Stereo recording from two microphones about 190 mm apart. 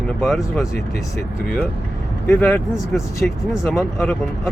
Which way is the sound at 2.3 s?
10° left (ahead or behind).